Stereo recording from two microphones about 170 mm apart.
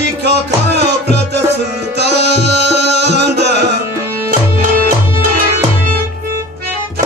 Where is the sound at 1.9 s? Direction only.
80° right.